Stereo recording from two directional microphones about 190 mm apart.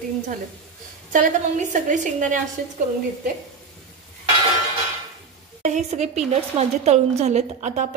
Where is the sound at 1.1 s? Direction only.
40° right (ahead or behind).